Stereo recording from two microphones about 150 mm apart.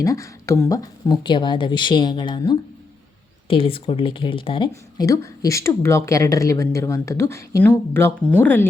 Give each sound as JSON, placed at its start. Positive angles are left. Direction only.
{"t": 0.0, "sound": "speech", "side_deg": 20}
{"t": 4.7, "sound": "speech", "side_deg": 20}